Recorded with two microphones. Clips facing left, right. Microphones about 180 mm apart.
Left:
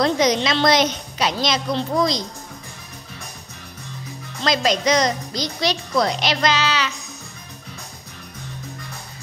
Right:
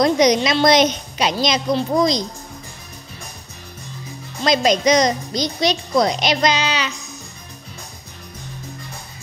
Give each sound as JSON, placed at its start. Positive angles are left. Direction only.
{"t": 0.0, "sound": "a child's voice", "side_deg": -15}
{"t": 4.4, "sound": "a child's voice", "side_deg": -20}